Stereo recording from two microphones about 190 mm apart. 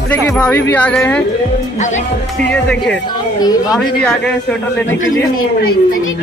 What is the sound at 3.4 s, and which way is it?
Speech, 20° left (ahead or behind).